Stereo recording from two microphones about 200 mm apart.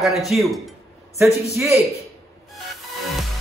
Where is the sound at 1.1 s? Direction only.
15° right (ahead or behind).